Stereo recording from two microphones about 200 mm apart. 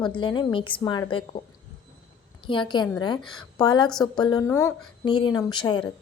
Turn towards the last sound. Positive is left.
turn(degrees=25)  # may be behind; listen again after turning